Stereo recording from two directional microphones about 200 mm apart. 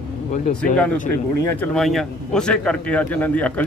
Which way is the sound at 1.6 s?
5° left (ahead or behind).